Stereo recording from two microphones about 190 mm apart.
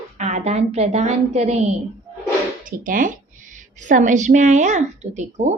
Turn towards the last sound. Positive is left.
turn(degrees=-40)  # may be behind; listen again after turning